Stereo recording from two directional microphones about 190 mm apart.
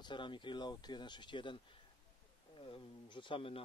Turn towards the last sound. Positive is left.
turn(degrees=30)  # may be behind; listen again after turning